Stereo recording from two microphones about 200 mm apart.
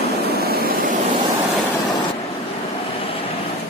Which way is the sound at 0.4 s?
50° right (ahead or behind).